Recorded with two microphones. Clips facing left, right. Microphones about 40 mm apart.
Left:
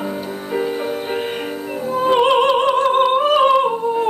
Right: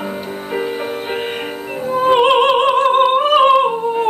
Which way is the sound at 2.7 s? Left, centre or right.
Right.